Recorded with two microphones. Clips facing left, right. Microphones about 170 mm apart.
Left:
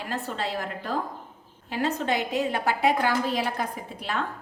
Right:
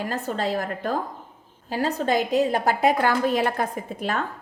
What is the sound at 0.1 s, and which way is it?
A woman's voice, 45° right (ahead or behind).